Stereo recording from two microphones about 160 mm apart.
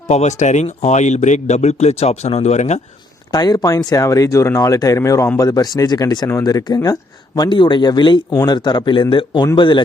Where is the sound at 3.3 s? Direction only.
25° left (ahead or behind).